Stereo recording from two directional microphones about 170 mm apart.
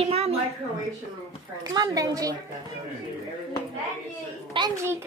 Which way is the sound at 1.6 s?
20° right (ahead or behind).